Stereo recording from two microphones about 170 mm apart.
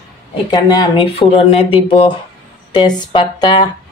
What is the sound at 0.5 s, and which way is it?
Speech, 25° left (ahead or behind).